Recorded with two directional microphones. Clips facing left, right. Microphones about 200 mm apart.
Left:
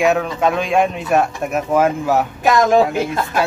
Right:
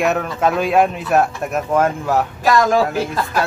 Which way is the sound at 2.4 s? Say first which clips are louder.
Left 2 dB; 20° left (ahead or behind).